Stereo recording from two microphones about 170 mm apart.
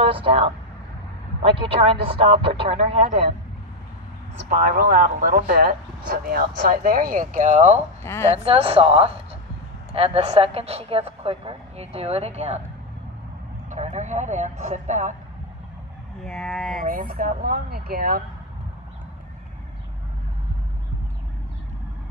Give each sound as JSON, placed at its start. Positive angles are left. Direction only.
{"t": 0.0, "sound": "speech", "side_deg": -30}
{"t": 1.6, "sound": "a woman's voice", "side_deg": -30}
{"t": 4.5, "sound": "speech", "side_deg": -50}
{"t": 8.0, "sound": "a woman's voice", "side_deg": 15}
{"t": 8.3, "sound": "a woman's voice", "side_deg": -35}
{"t": 13.7, "sound": "speech", "side_deg": -45}
{"t": 16.2, "sound": "speech", "side_deg": 0}
{"t": 16.8, "sound": "speech", "side_deg": -55}